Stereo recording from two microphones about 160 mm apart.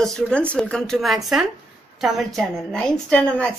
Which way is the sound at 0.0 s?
5° left (ahead or behind).